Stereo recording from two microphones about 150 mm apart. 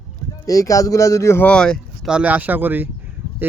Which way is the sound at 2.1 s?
10° right (ahead or behind).